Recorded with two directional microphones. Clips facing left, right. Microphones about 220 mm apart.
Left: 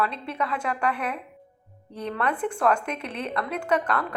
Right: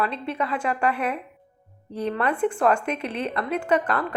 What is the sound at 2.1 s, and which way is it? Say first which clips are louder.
Speech: right 3 dB; 5° right (ahead or behind).